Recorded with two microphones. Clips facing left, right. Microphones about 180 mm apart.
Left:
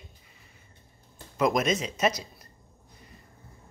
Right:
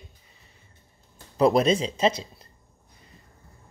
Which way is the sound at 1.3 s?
35° right (ahead or behind).